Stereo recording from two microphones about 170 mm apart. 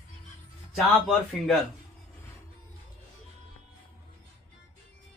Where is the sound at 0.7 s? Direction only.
Centre (ahead or behind).